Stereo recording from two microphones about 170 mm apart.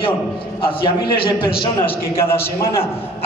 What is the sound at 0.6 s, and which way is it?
Speech, 30° left (ahead or behind).